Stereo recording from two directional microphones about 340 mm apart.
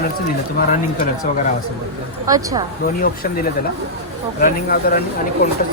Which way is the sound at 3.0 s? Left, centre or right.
Left.